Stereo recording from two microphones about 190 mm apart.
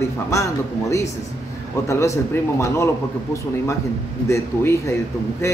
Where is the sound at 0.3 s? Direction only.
15° left (ahead or behind).